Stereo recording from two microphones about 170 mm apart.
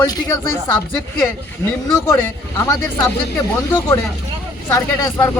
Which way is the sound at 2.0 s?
20° left (ahead or behind).